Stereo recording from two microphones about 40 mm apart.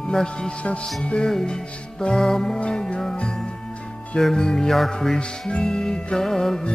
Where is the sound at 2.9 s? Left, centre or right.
Centre.